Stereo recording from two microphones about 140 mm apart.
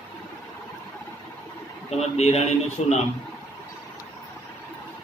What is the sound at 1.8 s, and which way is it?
Speech, 50° left (ahead or behind).